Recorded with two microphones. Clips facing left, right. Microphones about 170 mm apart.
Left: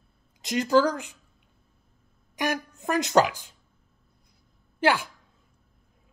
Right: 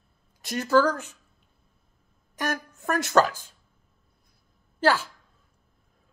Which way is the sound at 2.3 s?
15° left (ahead or behind).